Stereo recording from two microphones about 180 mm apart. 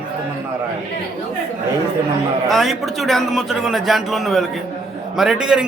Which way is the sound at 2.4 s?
Centre (ahead or behind).